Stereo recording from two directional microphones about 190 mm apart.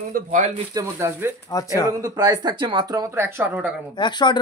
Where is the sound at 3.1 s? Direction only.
10° right (ahead or behind).